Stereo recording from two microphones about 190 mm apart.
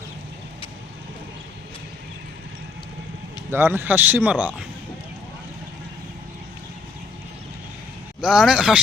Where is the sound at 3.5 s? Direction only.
15° right (ahead or behind).